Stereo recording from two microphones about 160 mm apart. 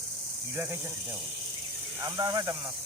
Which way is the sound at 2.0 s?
25° right (ahead or behind).